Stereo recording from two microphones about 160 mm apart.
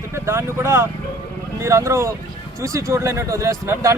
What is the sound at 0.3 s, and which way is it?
Speech, 15° right (ahead or behind).